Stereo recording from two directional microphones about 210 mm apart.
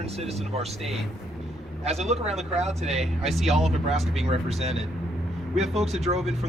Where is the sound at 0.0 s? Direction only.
30° right (ahead or behind).